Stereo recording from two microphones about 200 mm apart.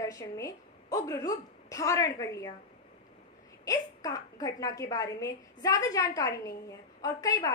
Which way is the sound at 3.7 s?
15° left (ahead or behind).